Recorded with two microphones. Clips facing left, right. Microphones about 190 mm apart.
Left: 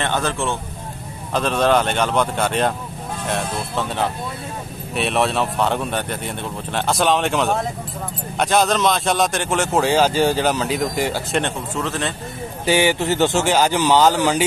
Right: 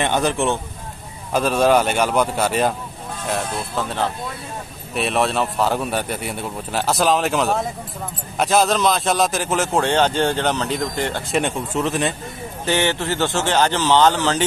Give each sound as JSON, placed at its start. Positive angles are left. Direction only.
{"t": 0.0, "sound": "a man's voice", "side_deg": -15}
{"t": 11.7, "sound": "speech", "side_deg": -15}
{"t": 12.6, "sound": "speech", "side_deg": 10}